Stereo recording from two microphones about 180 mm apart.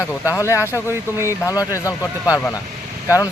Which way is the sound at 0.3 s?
15° left (ahead or behind).